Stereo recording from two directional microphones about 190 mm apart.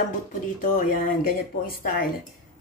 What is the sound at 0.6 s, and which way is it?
Speech, 45° left (ahead or behind).